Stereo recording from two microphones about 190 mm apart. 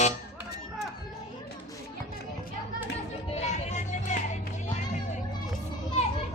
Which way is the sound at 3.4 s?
40° left (ahead or behind).